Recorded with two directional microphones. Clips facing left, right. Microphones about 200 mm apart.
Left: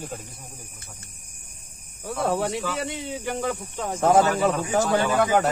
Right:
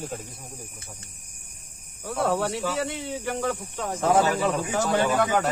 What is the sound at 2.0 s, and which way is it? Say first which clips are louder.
Speech: even; 15° left (ahead or behind).